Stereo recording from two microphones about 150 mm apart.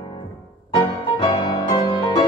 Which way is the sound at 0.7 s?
35° left (ahead or behind).